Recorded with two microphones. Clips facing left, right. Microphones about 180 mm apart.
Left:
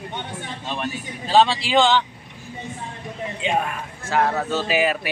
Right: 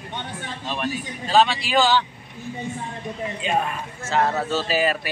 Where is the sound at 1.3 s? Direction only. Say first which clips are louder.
Left 2 dB; 25° left (ahead or behind).